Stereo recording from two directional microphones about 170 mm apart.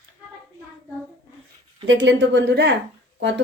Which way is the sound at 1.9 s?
90° right.